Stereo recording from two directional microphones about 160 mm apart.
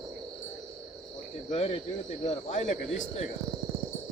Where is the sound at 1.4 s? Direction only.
40° left (ahead or behind).